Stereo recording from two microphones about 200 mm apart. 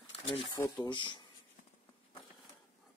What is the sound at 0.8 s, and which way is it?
Speech, 25° left (ahead or behind).